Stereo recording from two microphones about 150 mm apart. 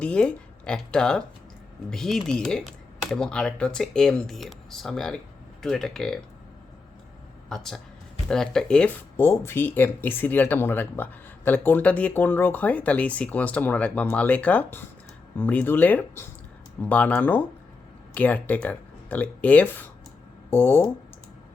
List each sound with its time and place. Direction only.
0.0 s speech: 5° left (ahead or behind)
7.5 s speech: centre (ahead or behind)